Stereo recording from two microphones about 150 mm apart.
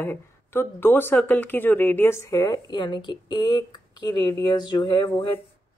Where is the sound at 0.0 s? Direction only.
15° left (ahead or behind).